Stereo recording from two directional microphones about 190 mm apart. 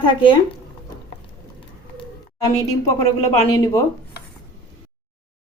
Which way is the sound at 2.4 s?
15° left (ahead or behind).